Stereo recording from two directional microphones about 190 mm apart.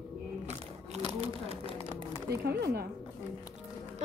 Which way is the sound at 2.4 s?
55° right (ahead or behind).